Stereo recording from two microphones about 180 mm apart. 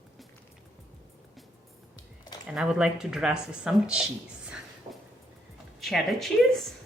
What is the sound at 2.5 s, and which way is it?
Speech, 5° right (ahead or behind).